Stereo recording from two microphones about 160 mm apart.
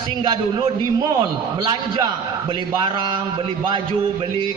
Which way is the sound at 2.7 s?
30° right (ahead or behind).